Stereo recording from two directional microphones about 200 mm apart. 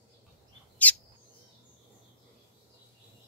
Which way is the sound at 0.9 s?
10° left (ahead or behind).